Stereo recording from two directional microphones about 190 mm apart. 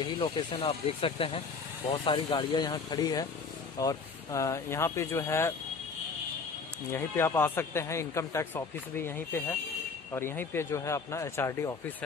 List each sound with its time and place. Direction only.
0.0 s speech: 30° left (ahead or behind); by 5.5 s 15° left (ahead or behind)
6.9 s speech: 10° left (ahead or behind)